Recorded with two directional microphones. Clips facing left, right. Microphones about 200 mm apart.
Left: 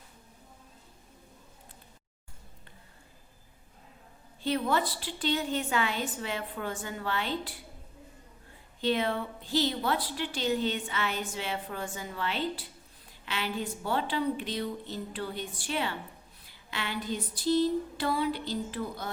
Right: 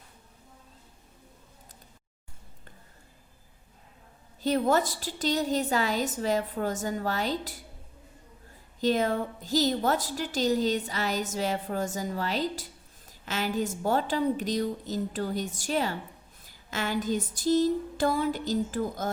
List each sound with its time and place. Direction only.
4.4 s a woman's voice: 40° right (ahead or behind)
8.8 s a woman's voice: 40° right (ahead or behind)